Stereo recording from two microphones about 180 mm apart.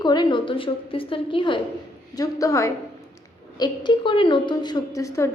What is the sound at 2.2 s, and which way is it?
A woman's voice, 20° left (ahead or behind).